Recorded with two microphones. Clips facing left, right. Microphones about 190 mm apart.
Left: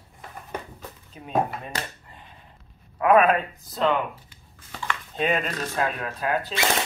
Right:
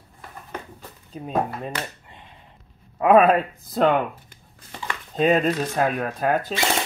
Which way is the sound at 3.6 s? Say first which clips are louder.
Right 4 dB; 50° right (ahead or behind).